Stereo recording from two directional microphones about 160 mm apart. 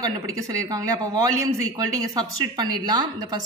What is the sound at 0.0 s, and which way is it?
A man's voice, 20° right (ahead or behind).